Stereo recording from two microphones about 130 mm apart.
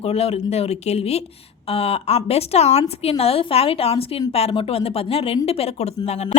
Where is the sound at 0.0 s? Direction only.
50° left (ahead or behind).